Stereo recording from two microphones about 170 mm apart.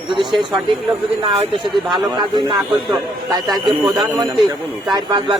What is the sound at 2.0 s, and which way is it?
Speech, 25° right (ahead or behind).